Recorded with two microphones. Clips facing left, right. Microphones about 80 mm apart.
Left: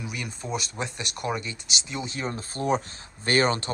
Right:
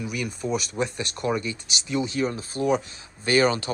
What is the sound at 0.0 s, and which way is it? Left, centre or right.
Speech, left.